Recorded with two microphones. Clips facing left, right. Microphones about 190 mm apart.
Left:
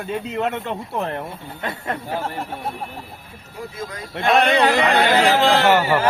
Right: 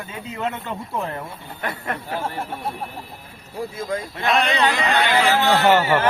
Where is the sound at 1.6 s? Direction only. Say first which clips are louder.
Left 1 dB; 20° left (ahead or behind).